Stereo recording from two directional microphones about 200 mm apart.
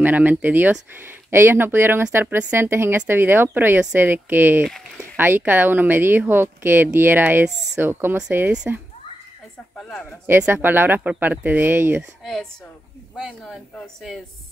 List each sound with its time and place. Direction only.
0.0 s a woman's voice: 10° right (ahead or behind)
4.6 s speech: 5° left (ahead or behind)
5.1 s a woman's voice: 10° right (ahead or behind)
9.8 s speech: 5° left (ahead or behind)
10.2 s a woman's voice: 10° right (ahead or behind)
13.1 s speech: 5° right (ahead or behind)